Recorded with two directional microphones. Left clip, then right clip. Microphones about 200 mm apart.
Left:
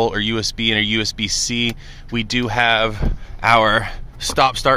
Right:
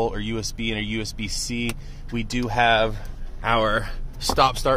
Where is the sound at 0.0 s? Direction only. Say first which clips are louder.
Left 7 dB; 30° left (ahead or behind).